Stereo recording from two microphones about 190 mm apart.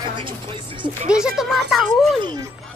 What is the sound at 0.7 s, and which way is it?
Speech, 25° right (ahead or behind).